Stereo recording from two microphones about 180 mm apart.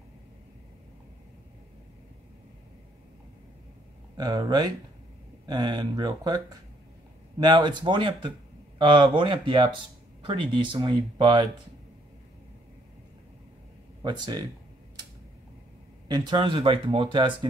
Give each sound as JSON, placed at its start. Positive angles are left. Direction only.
{"t": 4.2, "sound": "speech", "side_deg": -25}
{"t": 14.0, "sound": "speech", "side_deg": -25}
{"t": 16.1, "sound": "speech", "side_deg": -25}